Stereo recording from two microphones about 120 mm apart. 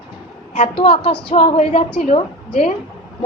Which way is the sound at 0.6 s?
50° left (ahead or behind).